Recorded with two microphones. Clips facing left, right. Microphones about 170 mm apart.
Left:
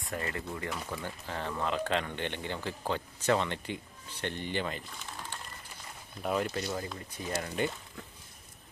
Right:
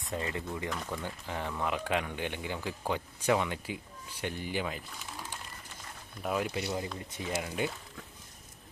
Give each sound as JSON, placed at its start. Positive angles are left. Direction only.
{"t": 0.1, "sound": "speech", "side_deg": -20}
{"t": 0.7, "sound": "speech", "side_deg": 5}
{"t": 1.0, "sound": "speech", "side_deg": -15}